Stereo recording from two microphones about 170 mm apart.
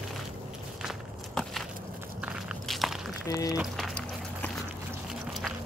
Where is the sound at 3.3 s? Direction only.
20° left (ahead or behind).